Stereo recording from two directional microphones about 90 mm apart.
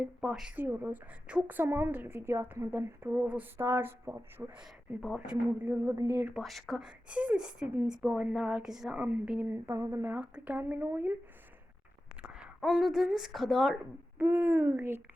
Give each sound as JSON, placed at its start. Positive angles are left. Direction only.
{"t": 0.0, "sound": "a woman's voice", "side_deg": -10}
{"t": 0.5, "sound": "a woman's voice", "side_deg": -20}
{"t": 5.1, "sound": "speech", "side_deg": -10}
{"t": 5.6, "sound": "a woman's voice", "side_deg": -25}
{"t": 6.3, "sound": "a woman's voice", "side_deg": 0}
{"t": 12.2, "sound": "a sound", "side_deg": -10}
{"t": 12.6, "sound": "a woman's voice", "side_deg": -5}
{"t": 14.2, "sound": "a woman's voice", "side_deg": -30}